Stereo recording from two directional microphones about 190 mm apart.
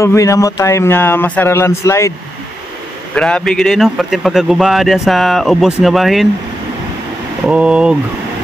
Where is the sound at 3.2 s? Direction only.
5° left (ahead or behind).